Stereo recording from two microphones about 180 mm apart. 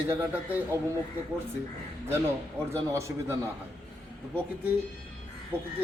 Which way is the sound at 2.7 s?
15° right (ahead or behind).